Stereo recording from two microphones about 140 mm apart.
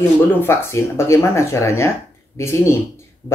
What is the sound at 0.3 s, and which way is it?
Speech, 15° left (ahead or behind).